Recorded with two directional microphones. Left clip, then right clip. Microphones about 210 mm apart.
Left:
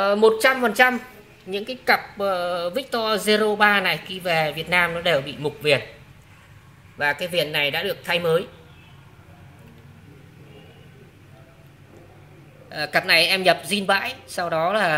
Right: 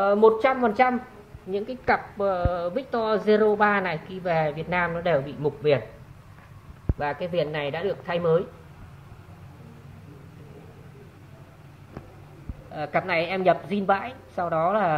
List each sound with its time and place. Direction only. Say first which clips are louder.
0.0 s speech: left 2 dB; 20° left (ahead or behind)
7.0 s a man's voice: left 4 dB; 15° left (ahead or behind)
12.7 s speech: left 6 dB; 20° left (ahead or behind)